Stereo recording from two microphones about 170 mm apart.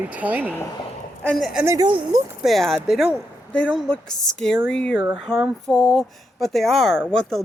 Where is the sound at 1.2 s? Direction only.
5° left (ahead or behind).